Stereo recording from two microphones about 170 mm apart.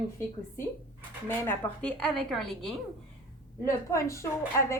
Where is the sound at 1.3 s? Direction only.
10° left (ahead or behind).